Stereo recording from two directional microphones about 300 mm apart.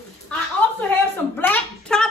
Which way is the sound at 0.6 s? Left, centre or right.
Centre.